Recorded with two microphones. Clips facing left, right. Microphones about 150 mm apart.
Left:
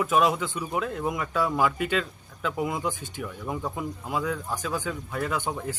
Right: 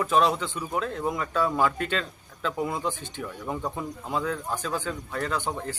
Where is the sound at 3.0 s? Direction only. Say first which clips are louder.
Even; 45° left (ahead or behind).